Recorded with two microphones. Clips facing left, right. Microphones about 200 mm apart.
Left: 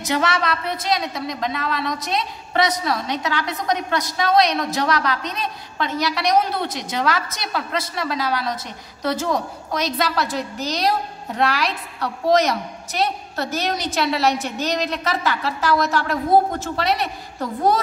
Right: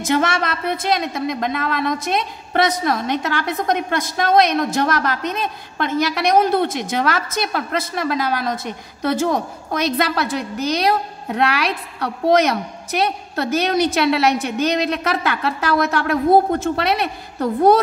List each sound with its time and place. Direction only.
0.0 s a woman's voice: 50° right (ahead or behind)